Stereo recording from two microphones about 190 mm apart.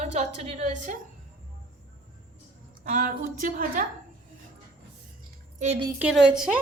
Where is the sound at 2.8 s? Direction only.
45° right (ahead or behind).